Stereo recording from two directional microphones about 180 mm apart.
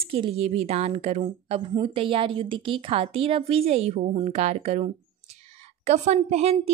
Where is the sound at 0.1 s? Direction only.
35° right (ahead or behind).